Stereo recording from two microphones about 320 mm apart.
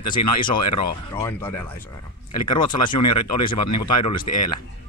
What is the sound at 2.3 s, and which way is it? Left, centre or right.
Speech, left.